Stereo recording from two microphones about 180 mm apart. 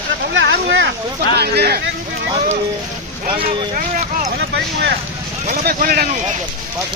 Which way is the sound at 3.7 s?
50° right (ahead or behind).